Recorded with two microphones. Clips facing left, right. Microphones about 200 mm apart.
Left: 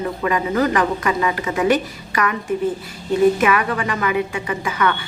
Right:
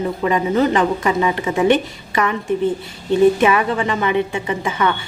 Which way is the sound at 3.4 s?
25° right (ahead or behind).